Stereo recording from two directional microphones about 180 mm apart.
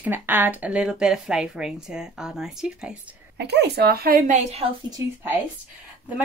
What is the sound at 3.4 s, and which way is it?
Speech, 70° right (ahead or behind).